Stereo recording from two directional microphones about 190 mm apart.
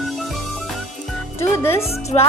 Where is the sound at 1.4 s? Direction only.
15° left (ahead or behind).